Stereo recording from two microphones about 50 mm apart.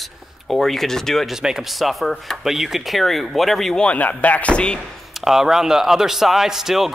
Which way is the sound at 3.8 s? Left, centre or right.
Left.